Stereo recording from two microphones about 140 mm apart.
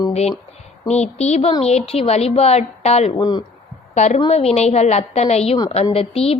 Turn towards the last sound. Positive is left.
turn(degrees=45)  # may be behind; listen again after turning